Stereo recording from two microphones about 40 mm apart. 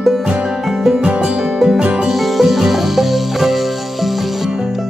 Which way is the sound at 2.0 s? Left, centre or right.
Centre.